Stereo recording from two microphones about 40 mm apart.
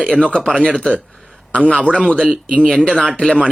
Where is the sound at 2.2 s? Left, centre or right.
Right.